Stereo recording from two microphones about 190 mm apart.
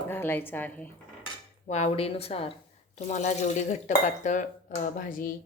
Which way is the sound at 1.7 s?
35° left (ahead or behind).